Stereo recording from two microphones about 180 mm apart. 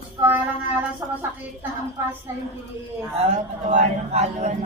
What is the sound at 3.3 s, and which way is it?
A man's voice, 40° right (ahead or behind).